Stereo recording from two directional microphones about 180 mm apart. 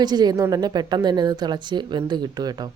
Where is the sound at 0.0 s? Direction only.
25° right (ahead or behind).